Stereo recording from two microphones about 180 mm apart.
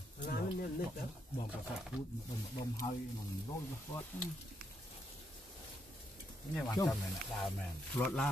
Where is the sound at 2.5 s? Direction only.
30° left (ahead or behind).